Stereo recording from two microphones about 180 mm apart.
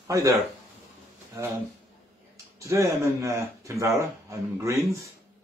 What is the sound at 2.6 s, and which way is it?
Speech, 15° right (ahead or behind).